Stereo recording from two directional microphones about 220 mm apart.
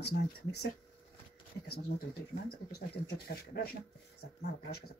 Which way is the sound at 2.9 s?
45° left (ahead or behind).